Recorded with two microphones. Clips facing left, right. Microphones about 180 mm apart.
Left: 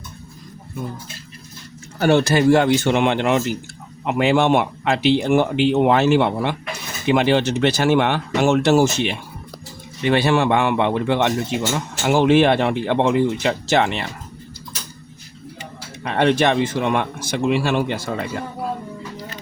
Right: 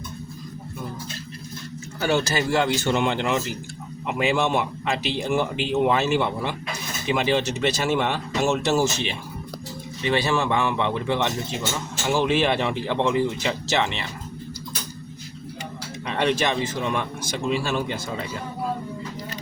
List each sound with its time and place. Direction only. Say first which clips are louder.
2.0 s speech: left 7 dB; 60° left (ahead or behind)
10.0 s speech: left 6 dB; 60° left (ahead or behind)
16.0 s speech: left 6 dB; 55° left (ahead or behind)